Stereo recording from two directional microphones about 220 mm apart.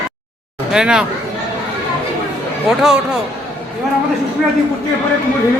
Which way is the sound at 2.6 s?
5° right (ahead or behind).